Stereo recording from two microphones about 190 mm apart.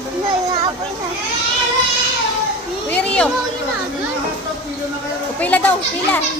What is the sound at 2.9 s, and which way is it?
Children playing, 5° left (ahead or behind).